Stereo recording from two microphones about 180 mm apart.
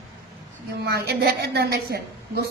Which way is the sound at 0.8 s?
60° right (ahead or behind).